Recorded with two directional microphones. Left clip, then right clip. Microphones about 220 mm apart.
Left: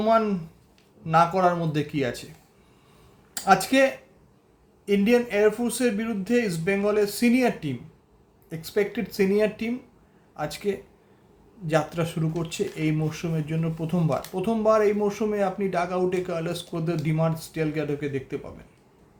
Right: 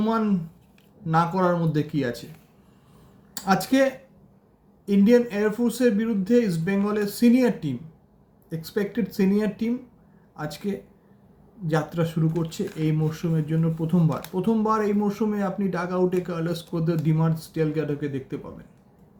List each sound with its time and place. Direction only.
1.0 s speech: 15° left (ahead or behind)
3.3 s speech: 15° left (ahead or behind)